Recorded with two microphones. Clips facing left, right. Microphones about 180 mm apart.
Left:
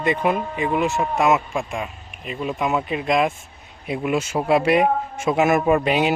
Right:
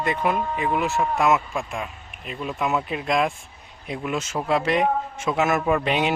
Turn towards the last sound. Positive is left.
turn(degrees=5)  # may be behind; listen again after turning